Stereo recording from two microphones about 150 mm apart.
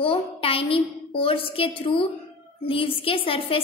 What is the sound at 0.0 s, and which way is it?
A woman's voice, 35° left (ahead or behind).